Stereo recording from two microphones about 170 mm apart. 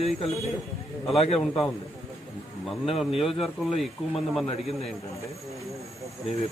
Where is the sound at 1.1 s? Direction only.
35° left (ahead or behind).